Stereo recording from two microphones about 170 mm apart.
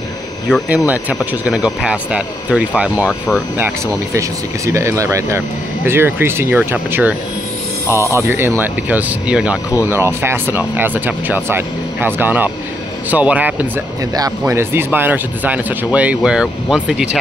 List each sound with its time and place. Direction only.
0.7 s speech: 10° right (ahead or behind)
3.5 s speech: 15° right (ahead or behind)